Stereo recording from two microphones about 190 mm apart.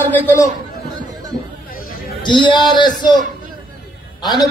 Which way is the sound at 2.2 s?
25° left (ahead or behind).